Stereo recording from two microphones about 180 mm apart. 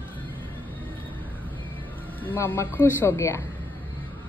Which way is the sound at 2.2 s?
10° left (ahead or behind).